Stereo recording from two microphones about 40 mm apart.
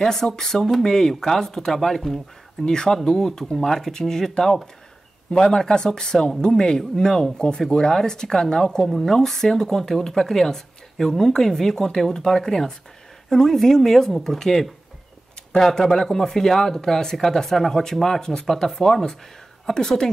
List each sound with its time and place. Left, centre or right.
0.0 s speech: centre
2.6 s speech: centre